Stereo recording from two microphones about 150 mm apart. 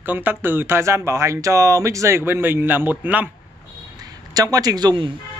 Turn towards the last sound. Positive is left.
turn(degrees=-30)  # may be behind; listen again after turning